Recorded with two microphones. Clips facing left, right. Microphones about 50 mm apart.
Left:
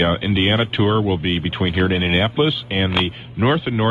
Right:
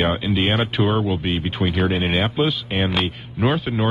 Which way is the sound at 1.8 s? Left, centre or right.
Centre.